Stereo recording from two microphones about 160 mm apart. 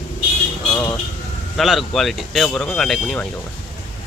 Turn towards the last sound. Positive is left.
turn(degrees=0)  # may be behind; listen again after turning